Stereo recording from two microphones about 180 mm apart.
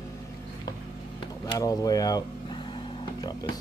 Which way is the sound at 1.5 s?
20° left (ahead or behind).